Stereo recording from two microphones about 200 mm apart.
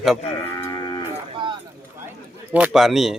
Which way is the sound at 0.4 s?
15° left (ahead or behind).